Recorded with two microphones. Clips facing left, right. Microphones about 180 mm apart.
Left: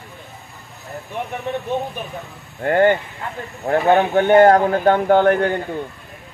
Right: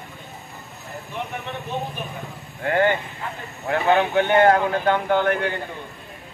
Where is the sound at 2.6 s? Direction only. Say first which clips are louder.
Left 5 dB; 45° left (ahead or behind).